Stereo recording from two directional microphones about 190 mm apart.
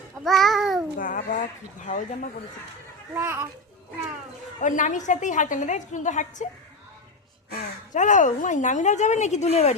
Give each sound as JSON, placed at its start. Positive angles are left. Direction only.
{"t": 0.3, "sound": "babbling", "side_deg": 0}
{"t": 0.9, "sound": "speech", "side_deg": 45}
{"t": 3.2, "sound": "a child's voice", "side_deg": -15}
{"t": 4.6, "sound": "speech", "side_deg": 40}
{"t": 7.5, "sound": "speech", "side_deg": 40}